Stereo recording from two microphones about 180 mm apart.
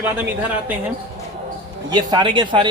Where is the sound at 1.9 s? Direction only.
25° right (ahead or behind).